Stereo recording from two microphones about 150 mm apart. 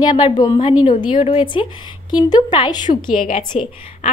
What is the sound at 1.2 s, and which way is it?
A woman's voice, 35° left (ahead or behind).